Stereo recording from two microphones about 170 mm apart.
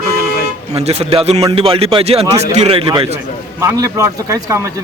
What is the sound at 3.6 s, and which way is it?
Speech, 15° right (ahead or behind).